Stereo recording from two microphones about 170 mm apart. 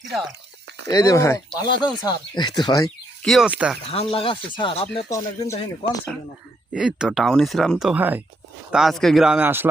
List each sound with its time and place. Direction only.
0.9 s speech: 20° left (ahead or behind)
3.2 s speech: 5° right (ahead or behind)
3.8 s speech: 35° left (ahead or behind)
5.0 s speech: 20° left (ahead or behind)
6.7 s speech: 5° right (ahead or behind)